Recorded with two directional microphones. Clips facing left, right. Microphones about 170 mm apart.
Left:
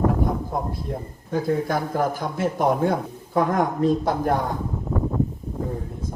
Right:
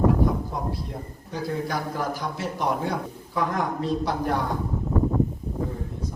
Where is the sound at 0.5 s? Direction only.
50° left (ahead or behind).